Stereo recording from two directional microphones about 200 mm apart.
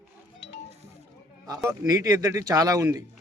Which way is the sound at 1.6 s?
20° right (ahead or behind).